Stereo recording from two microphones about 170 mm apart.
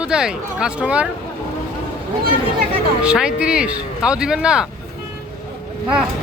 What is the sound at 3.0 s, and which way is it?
Speech, 5° right (ahead or behind).